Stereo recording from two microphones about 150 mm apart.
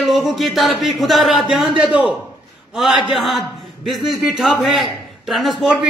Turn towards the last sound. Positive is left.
turn(degrees=0)  # may be behind; listen again after turning